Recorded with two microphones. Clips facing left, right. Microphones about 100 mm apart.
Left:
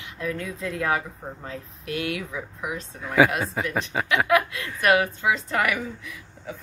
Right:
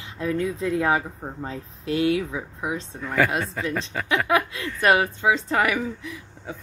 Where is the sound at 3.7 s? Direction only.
15° left (ahead or behind).